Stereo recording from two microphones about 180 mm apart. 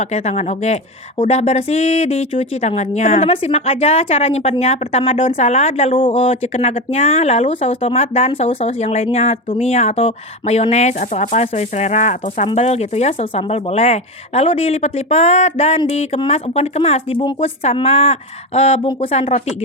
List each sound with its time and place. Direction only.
0.0 s speech: 40° left (ahead or behind)